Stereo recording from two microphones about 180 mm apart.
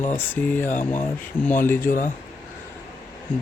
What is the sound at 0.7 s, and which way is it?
Speech, 45° left (ahead or behind).